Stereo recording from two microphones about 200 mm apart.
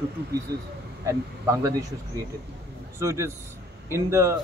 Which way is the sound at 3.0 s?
15° right (ahead or behind).